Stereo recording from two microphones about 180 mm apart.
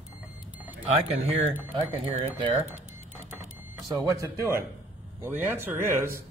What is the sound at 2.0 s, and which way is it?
Speech, 30° right (ahead or behind).